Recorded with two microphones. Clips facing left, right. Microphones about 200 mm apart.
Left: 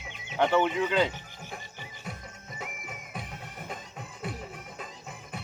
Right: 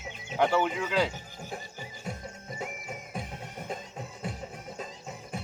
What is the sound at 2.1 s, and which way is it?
Music, 25° right (ahead or behind).